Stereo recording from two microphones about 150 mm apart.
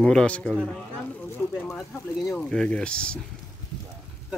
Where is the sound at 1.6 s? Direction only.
Centre (ahead or behind).